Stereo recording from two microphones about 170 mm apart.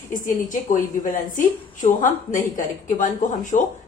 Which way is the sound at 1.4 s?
50° left (ahead or behind).